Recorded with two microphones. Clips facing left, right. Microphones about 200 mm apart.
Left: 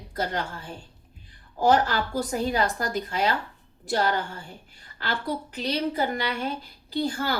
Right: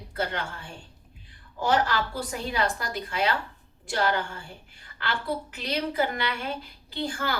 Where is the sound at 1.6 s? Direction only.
40° left (ahead or behind).